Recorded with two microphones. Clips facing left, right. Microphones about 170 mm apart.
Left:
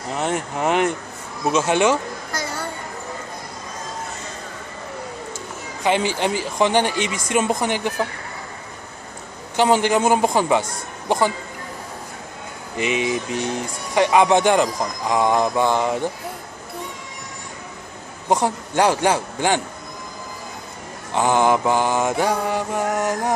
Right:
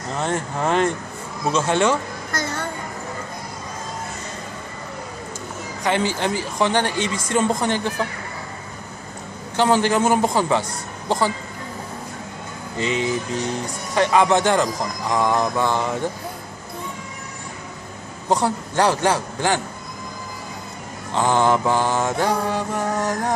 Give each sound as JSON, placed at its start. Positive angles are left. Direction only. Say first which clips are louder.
{"t": 0.1, "sound": "mantra", "louder": "left 1 dB", "side_deg": 15}
{"t": 1.5, "sound": "speech", "louder": "left 1 dB", "side_deg": 15}
{"t": 5.9, "sound": "mantra", "louder": "left 1 dB", "side_deg": 15}
{"t": 9.6, "sound": "mantra", "louder": "left 1 dB", "side_deg": 15}
{"t": 12.7, "sound": "mantra", "louder": "left 1 dB", "side_deg": 15}
{"t": 18.3, "sound": "mantra", "louder": "left 1 dB", "side_deg": 15}
{"t": 21.1, "sound": "mantra", "louder": "left 1 dB", "side_deg": 15}